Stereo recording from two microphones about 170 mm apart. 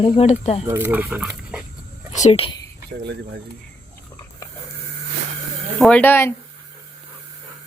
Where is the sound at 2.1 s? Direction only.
40° left (ahead or behind).